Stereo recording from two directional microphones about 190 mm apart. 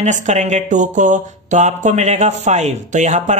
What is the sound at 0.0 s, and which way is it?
Speech, 40° right (ahead or behind).